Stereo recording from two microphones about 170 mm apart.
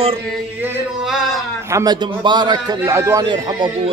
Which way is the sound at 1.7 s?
20° right (ahead or behind).